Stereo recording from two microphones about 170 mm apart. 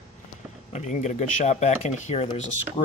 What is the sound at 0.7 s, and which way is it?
Speech, 45° left (ahead or behind).